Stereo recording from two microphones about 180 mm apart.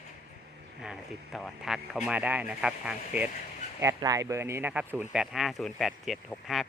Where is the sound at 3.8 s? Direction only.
20° right (ahead or behind).